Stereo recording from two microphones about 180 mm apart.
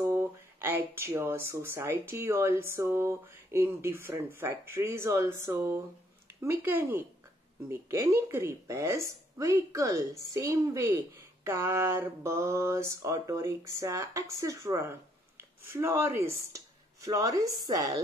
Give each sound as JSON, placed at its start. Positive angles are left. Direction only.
{"t": 0.0, "sound": "speech", "side_deg": -15}